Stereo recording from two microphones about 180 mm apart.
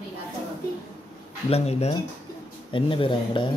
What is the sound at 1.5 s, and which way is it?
Speech, 35° left (ahead or behind).